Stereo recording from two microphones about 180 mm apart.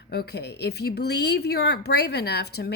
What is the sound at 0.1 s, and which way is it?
Speech, 65° left (ahead or behind).